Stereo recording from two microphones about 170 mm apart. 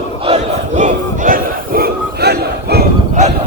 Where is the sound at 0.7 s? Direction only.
50° right (ahead or behind); by 2.9 s 70° right (ahead or behind).